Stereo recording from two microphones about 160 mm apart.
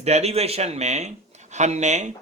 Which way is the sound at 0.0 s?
40° right (ahead or behind).